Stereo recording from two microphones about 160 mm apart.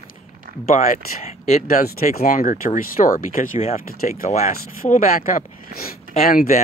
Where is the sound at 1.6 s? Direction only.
65° left (ahead or behind).